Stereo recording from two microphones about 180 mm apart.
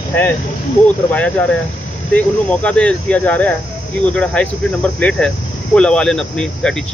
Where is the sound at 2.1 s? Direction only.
5° left (ahead or behind).